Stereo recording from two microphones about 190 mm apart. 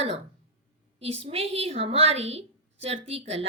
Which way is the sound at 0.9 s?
30° right (ahead or behind).